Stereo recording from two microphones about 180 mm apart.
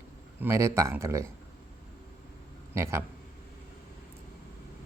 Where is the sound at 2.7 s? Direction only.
15° right (ahead or behind).